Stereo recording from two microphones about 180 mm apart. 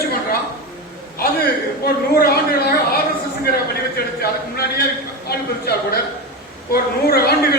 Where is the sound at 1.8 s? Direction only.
55° left (ahead or behind).